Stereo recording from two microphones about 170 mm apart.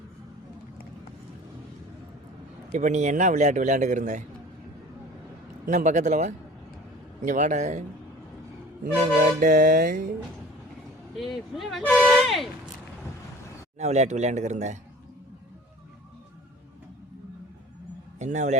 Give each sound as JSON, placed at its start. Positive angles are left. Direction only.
{"t": 2.7, "sound": "a man's voice", "side_deg": -45}
{"t": 5.6, "sound": "a man's voice", "side_deg": -45}
{"t": 9.4, "sound": "a man's voice", "side_deg": -50}
{"t": 11.2, "sound": "speech", "side_deg": 0}
{"t": 13.7, "sound": "a man's voice", "side_deg": -40}
{"t": 18.2, "sound": "a man's voice", "side_deg": -45}